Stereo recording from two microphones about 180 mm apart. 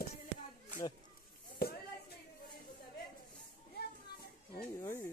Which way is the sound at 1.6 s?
60° left (ahead or behind).